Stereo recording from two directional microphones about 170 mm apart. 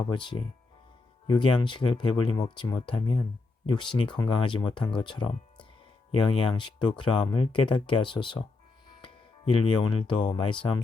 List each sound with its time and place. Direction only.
0.0 s speech: 30° left (ahead or behind)